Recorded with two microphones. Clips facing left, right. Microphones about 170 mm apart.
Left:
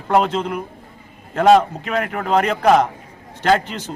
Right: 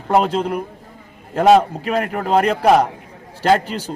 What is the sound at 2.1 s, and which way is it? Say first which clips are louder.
Speech: right 1 dB; 5° right (ahead or behind).